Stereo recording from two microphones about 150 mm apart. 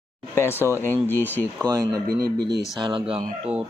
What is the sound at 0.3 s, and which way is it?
Speech, 15° left (ahead or behind).